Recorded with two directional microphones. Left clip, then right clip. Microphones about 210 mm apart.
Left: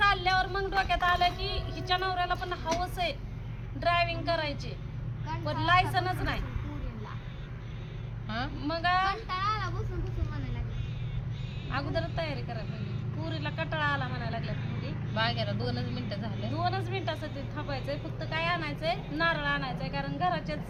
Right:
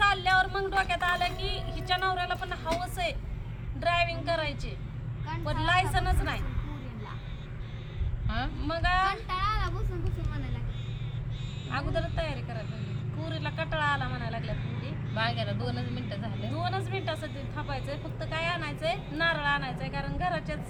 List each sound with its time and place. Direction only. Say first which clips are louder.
0.0 s a sound: right 1 dB; 10° right (ahead or behind)
2.8 s speech: even; 10° right (ahead or behind)
5.6 s speech: left 1 dB; 10° right (ahead or behind)
8.3 s speech: right 1 dB; 10° left (ahead or behind)
8.6 s speech: even; 10° right (ahead or behind)
9.0 s vehicle: right 1 dB; 40° right (ahead or behind)
11.7 s speech: right 1 dB; 10° right (ahead or behind)
15.1 s speech: even; 10° left (ahead or behind)
16.5 s speech: left 1 dB; 10° right (ahead or behind)